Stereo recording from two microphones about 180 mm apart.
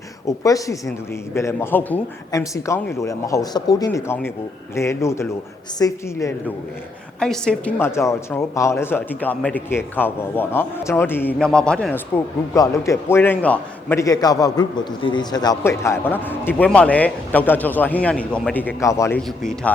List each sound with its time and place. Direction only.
0.3 s a man's voice: 20° left (ahead or behind)
7.2 s a man's voice: 5° left (ahead or behind)
12.5 s a man's voice: 15° left (ahead or behind)
19.4 s speech: 5° left (ahead or behind)